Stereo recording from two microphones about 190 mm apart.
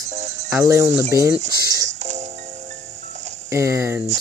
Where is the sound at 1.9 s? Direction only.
35° right (ahead or behind).